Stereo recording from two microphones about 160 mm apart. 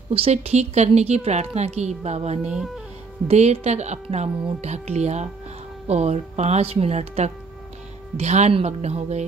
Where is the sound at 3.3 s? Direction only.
45° right (ahead or behind).